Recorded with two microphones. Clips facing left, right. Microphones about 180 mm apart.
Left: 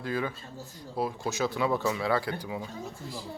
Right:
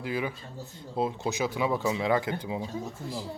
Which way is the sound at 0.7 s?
25° right (ahead or behind).